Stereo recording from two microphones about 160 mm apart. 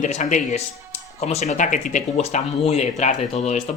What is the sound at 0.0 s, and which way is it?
Speech, 50° left (ahead or behind).